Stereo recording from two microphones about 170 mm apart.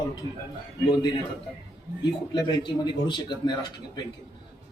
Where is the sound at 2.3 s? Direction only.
25° left (ahead or behind).